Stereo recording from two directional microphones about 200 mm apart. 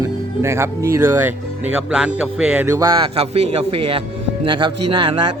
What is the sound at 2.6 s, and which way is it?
Speech, 15° right (ahead or behind).